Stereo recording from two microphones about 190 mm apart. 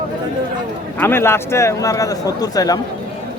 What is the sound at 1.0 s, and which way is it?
A man's voice, 10° left (ahead or behind).